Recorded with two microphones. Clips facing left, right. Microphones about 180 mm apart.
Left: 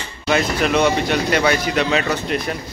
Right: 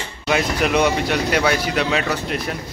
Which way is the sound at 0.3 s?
5° right (ahead or behind).